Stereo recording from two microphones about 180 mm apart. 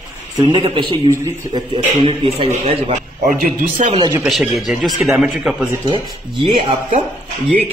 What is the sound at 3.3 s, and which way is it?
Speech, 50° right (ahead or behind).